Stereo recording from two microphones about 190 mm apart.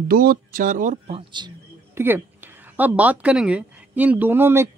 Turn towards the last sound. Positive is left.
turn(degrees=-10)  # may be behind; listen again after turning